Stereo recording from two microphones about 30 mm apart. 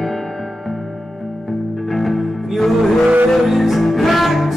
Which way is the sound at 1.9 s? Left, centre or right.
Centre.